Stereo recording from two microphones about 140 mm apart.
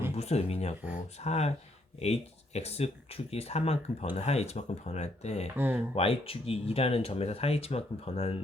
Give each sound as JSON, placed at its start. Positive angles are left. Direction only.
{"t": 0.2, "sound": "speech", "side_deg": 50}
{"t": 5.5, "sound": "speech", "side_deg": -15}
{"t": 5.9, "sound": "speech", "side_deg": 45}